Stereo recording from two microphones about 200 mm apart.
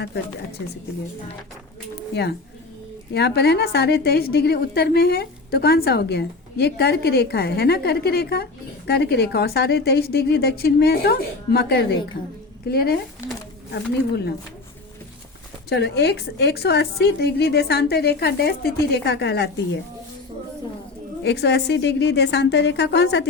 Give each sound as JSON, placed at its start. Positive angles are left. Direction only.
{"t": 3.1, "sound": "a woman's voice", "side_deg": 55}
{"t": 15.7, "sound": "a woman's voice", "side_deg": 55}
{"t": 21.2, "sound": "a woman's voice", "side_deg": 60}